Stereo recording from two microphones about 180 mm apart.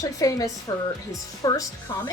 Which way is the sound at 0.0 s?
20° left (ahead or behind).